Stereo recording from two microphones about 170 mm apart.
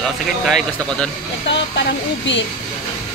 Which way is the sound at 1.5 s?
90° left.